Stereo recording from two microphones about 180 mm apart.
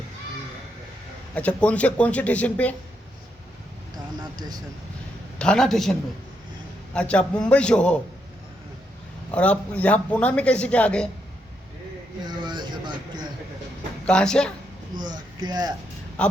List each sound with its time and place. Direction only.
1.4 s a man's voice: 5° left (ahead or behind)
3.9 s speech: 20° right (ahead or behind)
5.4 s a man's voice: 5° left (ahead or behind)
9.3 s a man's voice: 5° left (ahead or behind)
12.2 s vehicle: 25° right (ahead or behind)
14.0 s a man's voice: 5° left (ahead or behind)
14.9 s speech: 25° right (ahead or behind)
16.2 s speech: 5° left (ahead or behind)